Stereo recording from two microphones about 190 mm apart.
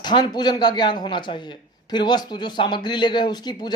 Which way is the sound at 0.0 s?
20° left (ahead or behind).